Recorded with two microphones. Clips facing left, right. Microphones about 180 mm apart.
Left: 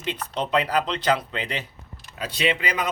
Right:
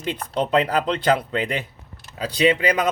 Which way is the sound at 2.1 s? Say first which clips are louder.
Right 6 dB; 40° right (ahead or behind).